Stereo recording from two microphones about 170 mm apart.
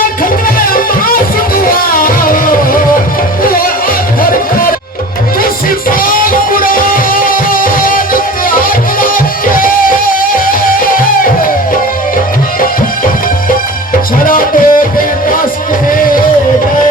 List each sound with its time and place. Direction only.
0.4 s music: 55° left (ahead or behind)
6.0 s music: 55° left (ahead or behind)
14.3 s music: 55° left (ahead or behind)